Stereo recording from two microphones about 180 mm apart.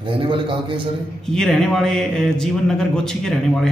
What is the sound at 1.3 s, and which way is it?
Speech, centre (ahead or behind).